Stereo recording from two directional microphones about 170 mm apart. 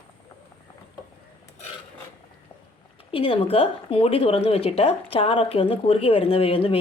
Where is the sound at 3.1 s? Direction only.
35° left (ahead or behind).